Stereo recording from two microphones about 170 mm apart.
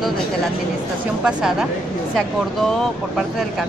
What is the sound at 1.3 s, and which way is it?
Speech, 5° right (ahead or behind).